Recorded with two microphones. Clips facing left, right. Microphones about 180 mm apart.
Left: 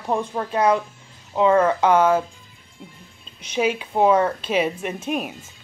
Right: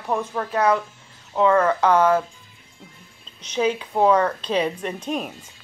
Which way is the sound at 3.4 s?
10° left (ahead or behind).